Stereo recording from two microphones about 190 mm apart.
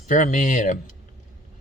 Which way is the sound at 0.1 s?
40° left (ahead or behind).